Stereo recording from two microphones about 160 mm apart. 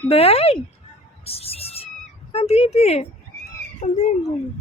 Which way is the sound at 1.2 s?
40° left (ahead or behind).